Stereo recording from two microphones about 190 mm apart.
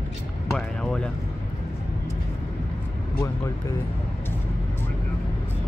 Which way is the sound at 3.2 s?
15° left (ahead or behind).